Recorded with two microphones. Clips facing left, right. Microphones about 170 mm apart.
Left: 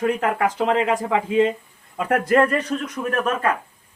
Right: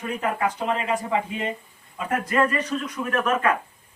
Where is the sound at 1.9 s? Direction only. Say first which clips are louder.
Left 6 dB; 65° left (ahead or behind).